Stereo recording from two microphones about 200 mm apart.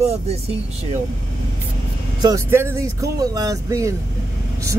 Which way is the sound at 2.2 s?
15° right (ahead or behind).